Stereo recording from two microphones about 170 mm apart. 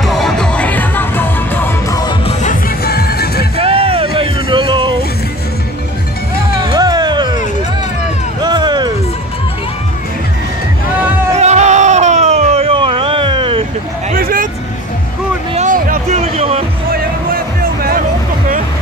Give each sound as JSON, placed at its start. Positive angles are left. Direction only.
{"t": 0.0, "sound": "music", "side_deg": 0}
{"t": 2.8, "sound": "music", "side_deg": 65}
{"t": 3.5, "sound": "music", "side_deg": -35}
{"t": 6.6, "sound": "music", "side_deg": -25}
{"t": 8.4, "sound": "music", "side_deg": -25}
{"t": 11.3, "sound": "baby cry", "side_deg": -40}
{"t": 14.1, "sound": "vehicle", "side_deg": -60}
{"t": 15.5, "sound": "a sound", "side_deg": -50}
{"t": 16.9, "sound": "music", "side_deg": -60}